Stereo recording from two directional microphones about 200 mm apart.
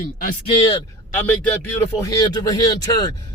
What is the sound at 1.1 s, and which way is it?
A man's voice, 10° left (ahead or behind).